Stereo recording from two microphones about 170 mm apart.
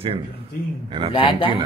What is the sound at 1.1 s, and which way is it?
Speech, 30° left (ahead or behind).